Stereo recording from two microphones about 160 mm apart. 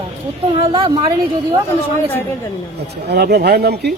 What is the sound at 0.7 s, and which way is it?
Speech, 35° right (ahead or behind).